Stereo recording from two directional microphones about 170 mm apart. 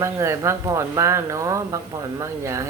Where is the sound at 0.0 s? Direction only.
15° right (ahead or behind).